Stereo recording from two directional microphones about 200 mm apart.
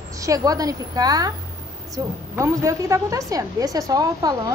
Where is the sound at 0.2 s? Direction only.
15° right (ahead or behind).